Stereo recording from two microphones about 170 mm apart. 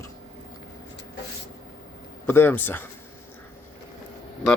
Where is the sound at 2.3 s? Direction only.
10° left (ahead or behind).